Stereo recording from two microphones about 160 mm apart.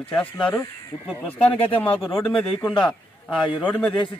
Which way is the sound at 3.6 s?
10° left (ahead or behind).